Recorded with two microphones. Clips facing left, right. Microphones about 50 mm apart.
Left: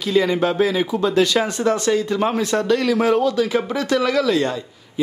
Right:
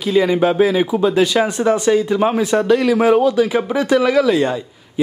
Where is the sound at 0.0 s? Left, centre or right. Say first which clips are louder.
Right 3 dB; centre.